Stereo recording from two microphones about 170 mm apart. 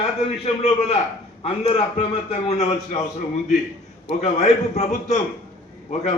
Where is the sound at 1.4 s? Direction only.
35° left (ahead or behind).